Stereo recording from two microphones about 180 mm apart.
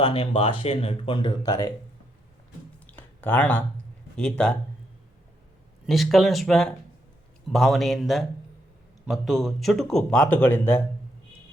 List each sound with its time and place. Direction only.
0.0 s speech: 30° left (ahead or behind)
2.8 s a sound: 10° left (ahead or behind)
4.2 s a man's voice: 5° left (ahead or behind)
5.8 s a man's voice: centre (ahead or behind)